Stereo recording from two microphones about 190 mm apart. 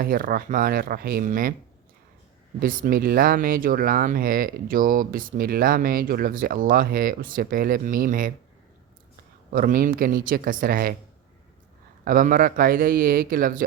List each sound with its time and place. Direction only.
0.0 s speech: 50° right (ahead or behind)
2.6 s speech: 45° right (ahead or behind)
9.5 s speech: 45° right (ahead or behind)
12.0 s speech: 45° right (ahead or behind)